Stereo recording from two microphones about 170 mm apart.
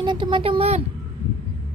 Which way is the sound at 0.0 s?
30° right (ahead or behind).